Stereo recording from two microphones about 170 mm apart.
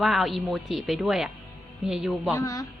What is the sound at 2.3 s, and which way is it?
Speech, 20° left (ahead or behind).